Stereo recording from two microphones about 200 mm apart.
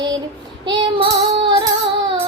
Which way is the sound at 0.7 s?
20° right (ahead or behind).